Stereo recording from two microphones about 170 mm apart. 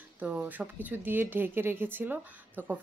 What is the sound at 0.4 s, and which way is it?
A woman's voice, 10° right (ahead or behind).